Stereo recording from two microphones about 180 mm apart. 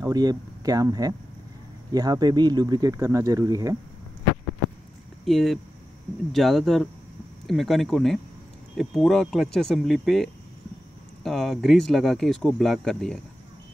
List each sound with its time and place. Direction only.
0.0 s speech: 20° right (ahead or behind)
5.2 s speech: centre (ahead or behind)